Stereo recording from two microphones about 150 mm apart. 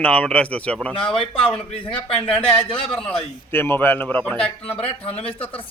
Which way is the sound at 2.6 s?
40° left (ahead or behind).